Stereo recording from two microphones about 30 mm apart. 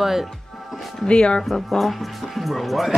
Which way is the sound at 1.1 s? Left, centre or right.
Left.